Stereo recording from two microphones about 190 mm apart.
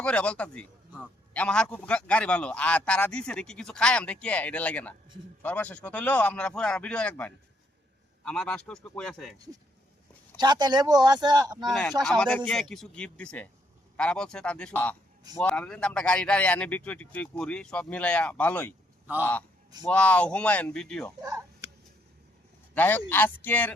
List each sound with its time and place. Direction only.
0.0 s a man's voice: 5° left (ahead or behind)
10.3 s speech: 25° right (ahead or behind)
11.5 s a man's voice: centre (ahead or behind)
21.2 s a sound: 20° right (ahead or behind)
22.7 s a man's voice: 10° left (ahead or behind)